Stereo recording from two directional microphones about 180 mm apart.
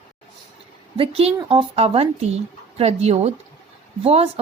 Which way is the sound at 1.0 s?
30° right (ahead or behind).